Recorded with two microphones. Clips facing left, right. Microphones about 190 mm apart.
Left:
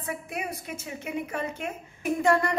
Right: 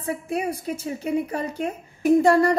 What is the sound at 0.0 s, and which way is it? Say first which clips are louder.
A woman's voice: right 8 dB; 30° right (ahead or behind).